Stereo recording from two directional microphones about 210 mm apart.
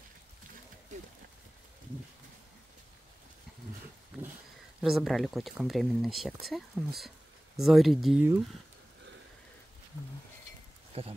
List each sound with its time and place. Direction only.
4.8 s speech: centre (ahead or behind)
10.9 s speech: 30° right (ahead or behind)